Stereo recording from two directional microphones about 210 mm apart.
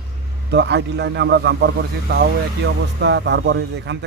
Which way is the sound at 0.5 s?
55° right (ahead or behind).